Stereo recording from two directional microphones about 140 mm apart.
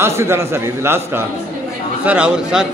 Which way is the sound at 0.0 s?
20° right (ahead or behind).